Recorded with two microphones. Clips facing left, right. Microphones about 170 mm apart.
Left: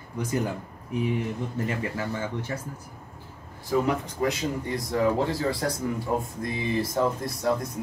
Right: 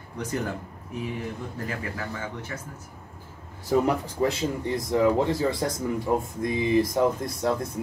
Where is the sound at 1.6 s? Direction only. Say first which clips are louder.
Left 6 dB; 20° left (ahead or behind).